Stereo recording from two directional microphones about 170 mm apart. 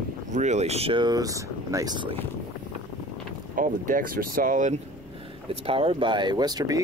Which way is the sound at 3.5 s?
55° right (ahead or behind).